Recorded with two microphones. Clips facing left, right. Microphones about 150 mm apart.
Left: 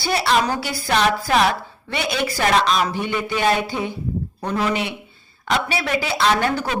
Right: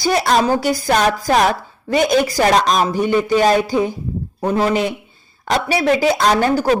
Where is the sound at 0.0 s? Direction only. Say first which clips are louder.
Right 4 dB; 45° right (ahead or behind).